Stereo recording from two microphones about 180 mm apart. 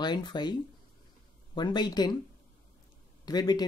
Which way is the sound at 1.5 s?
25° left (ahead or behind).